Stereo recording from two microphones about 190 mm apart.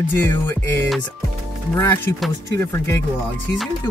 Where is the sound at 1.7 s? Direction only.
10° left (ahead or behind).